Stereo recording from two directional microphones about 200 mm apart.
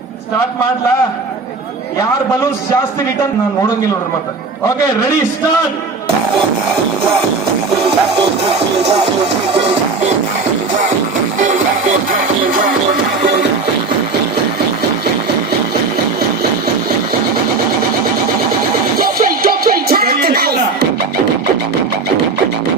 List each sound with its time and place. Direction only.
8.2 s music: 30° right (ahead or behind)
12.1 s music: 45° right (ahead or behind)
18.9 s music: 45° right (ahead or behind)